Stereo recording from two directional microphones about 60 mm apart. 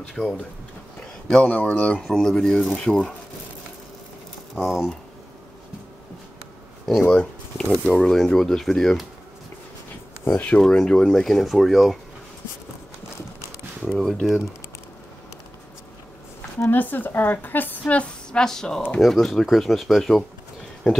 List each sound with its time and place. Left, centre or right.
0.1 s speech: centre
4.6 s speech: centre
7.1 s speech: centre
10.3 s a woman's voice: left
10.6 s speech: centre
13.9 s speech: centre
16.7 s a woman's voice: left; by 21.0 s centre